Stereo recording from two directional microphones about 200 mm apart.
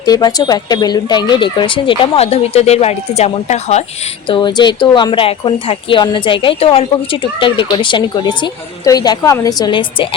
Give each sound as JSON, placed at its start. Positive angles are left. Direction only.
{"t": 0.0, "sound": "speech", "side_deg": 20}
{"t": 4.3, "sound": "speech", "side_deg": 25}